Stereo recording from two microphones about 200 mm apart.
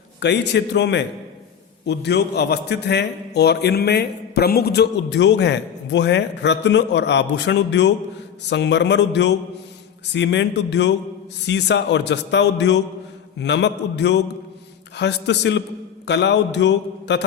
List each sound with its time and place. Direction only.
0.2 s a man's voice: 60° left (ahead or behind)